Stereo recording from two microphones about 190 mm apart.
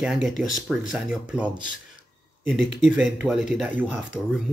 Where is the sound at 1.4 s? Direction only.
25° right (ahead or behind).